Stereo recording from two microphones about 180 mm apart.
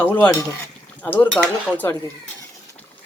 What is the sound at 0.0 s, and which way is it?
Speech, 10° left (ahead or behind).